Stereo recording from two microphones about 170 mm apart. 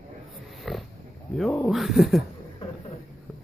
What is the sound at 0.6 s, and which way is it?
Pig, centre (ahead or behind).